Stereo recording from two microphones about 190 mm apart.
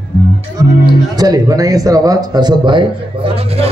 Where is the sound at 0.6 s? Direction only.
20° right (ahead or behind).